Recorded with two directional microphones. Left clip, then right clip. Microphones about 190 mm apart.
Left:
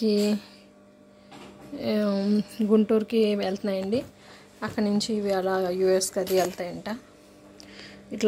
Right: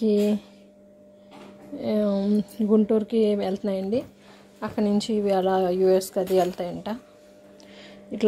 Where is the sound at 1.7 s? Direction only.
10° right (ahead or behind).